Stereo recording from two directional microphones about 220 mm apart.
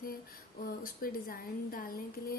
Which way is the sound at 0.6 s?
40° left (ahead or behind).